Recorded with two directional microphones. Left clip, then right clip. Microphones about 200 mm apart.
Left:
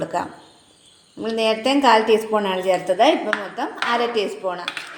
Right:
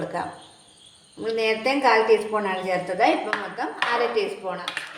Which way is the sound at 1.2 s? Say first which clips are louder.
Left 3 dB; 30° left (ahead or behind).